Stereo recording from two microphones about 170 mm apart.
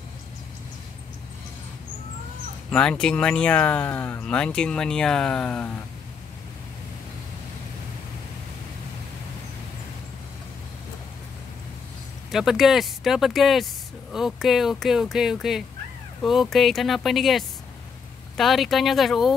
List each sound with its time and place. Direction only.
2.7 s speech: 5° left (ahead or behind)
12.3 s speech: centre (ahead or behind)